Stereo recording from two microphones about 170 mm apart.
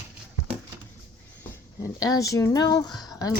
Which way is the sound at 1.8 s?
20° left (ahead or behind).